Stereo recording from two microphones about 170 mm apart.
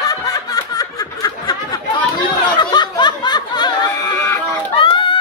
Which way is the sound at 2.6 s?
25° left (ahead or behind).